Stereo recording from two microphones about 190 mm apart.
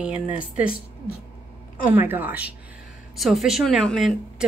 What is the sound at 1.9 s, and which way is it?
Speech, 10° right (ahead or behind).